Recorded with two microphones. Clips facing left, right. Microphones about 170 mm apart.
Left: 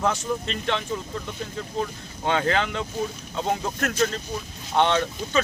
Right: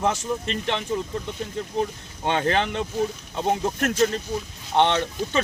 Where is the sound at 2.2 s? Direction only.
25° right (ahead or behind).